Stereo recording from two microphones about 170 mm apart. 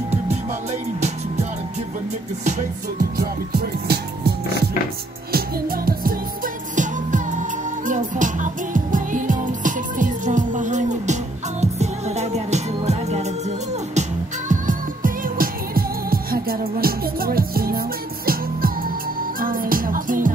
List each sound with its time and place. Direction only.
3.2 s music: 65° right (ahead or behind)
5.3 s music: 60° right (ahead or behind); by 13.3 s 40° right (ahead or behind)
14.5 s music: 50° right (ahead or behind)